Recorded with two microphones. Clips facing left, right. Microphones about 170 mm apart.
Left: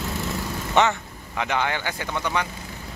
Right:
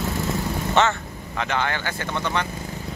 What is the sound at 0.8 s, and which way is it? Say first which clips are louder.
Speech: left 1 dB; 15° left (ahead or behind).